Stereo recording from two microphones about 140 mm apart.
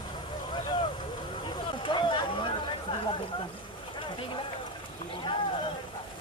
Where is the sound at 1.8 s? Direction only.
35° left (ahead or behind).